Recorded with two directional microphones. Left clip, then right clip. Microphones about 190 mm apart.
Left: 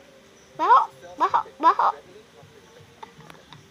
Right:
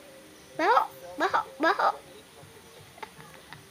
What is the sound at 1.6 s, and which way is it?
Speech, 10° right (ahead or behind).